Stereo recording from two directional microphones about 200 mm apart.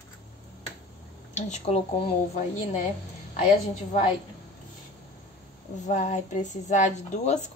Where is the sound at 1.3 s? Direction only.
35° left (ahead or behind).